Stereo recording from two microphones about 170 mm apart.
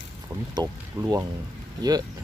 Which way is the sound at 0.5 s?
20° right (ahead or behind).